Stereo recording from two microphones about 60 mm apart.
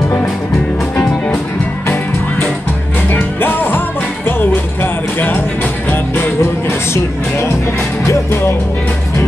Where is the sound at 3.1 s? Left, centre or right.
Left.